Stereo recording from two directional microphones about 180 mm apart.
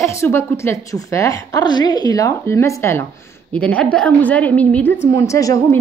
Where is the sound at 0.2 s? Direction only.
15° left (ahead or behind).